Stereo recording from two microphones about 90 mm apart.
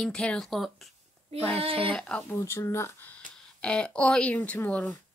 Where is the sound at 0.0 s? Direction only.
10° left (ahead or behind).